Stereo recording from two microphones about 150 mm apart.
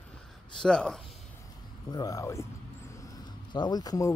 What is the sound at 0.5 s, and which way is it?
Speech, 5° left (ahead or behind).